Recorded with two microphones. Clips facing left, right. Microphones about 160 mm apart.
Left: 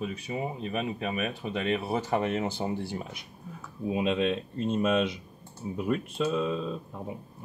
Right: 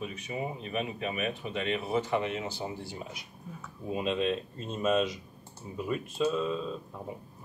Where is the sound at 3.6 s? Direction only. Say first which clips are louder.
Left 4 dB; centre (ahead or behind).